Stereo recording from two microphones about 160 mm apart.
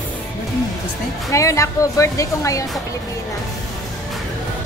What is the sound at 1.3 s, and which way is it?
Speech, 20° left (ahead or behind).